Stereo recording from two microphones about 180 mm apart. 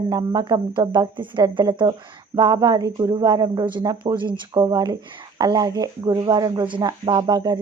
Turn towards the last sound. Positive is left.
turn(degrees=-25)  # may be behind; listen again after turning